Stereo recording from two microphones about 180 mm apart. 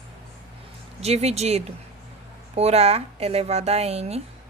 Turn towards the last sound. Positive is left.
turn(degrees=-35)  # may be behind; listen again after turning